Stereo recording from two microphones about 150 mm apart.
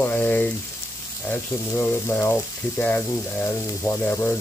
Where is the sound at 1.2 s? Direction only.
10° left (ahead or behind).